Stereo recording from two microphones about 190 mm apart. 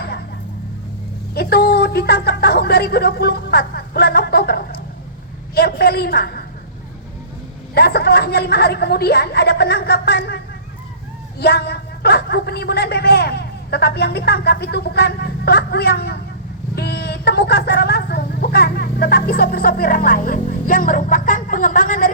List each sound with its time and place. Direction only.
1.3 s speech: 55° left (ahead or behind)
7.8 s speech: 55° left (ahead or behind)